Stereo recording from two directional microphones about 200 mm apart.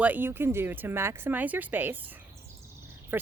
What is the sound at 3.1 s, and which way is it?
Speech, 10° right (ahead or behind).